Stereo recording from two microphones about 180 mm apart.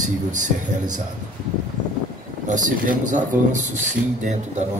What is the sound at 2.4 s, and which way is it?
Speech, 45° right (ahead or behind).